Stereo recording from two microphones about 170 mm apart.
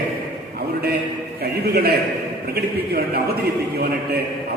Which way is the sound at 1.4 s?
65° right (ahead or behind).